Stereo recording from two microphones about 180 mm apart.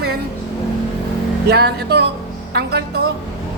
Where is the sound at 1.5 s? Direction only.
65° right (ahead or behind).